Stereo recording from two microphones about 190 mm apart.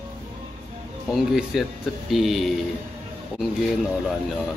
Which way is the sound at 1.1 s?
Centre (ahead or behind).